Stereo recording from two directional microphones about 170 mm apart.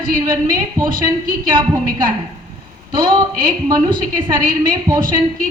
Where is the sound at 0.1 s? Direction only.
55° right (ahead or behind).